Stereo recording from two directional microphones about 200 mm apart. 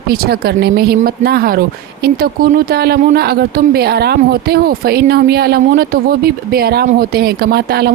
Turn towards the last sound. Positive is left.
turn(degrees=-50)  # may be behind; listen again after turning